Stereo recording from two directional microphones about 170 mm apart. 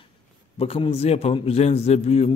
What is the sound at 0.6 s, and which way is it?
A man's voice, 35° left (ahead or behind).